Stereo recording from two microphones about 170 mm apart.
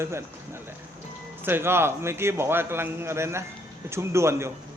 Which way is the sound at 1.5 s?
15° right (ahead or behind).